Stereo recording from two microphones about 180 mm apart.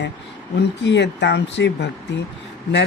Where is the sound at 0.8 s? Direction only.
75° left (ahead or behind).